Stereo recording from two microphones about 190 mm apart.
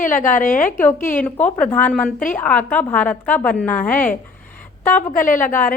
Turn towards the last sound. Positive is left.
turn(degrees=45)  # may be behind; listen again after turning